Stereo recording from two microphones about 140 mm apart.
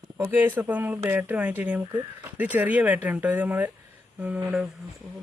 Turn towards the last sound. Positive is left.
turn(degrees=-10)  # may be behind; listen again after turning